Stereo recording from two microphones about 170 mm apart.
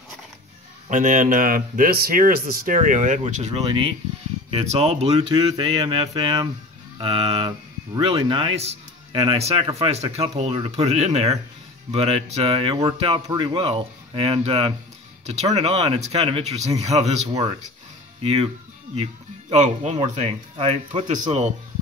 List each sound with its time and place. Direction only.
0.8 s speech: 50° right (ahead or behind)
17.3 s speech: 20° right (ahead or behind)
18.2 s speech: 35° right (ahead or behind)
19.5 s speech: 45° right (ahead or behind)